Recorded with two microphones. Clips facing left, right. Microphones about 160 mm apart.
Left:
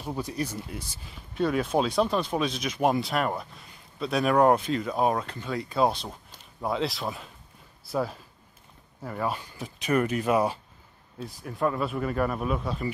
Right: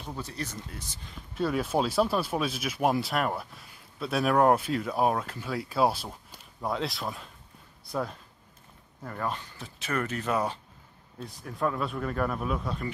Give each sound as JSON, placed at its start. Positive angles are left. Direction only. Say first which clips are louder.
{"t": 0.0, "sound": "speech", "louder": "left 6 dB", "side_deg": 15}